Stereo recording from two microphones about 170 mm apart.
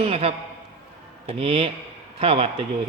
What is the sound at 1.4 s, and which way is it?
A man's voice, 35° right (ahead or behind).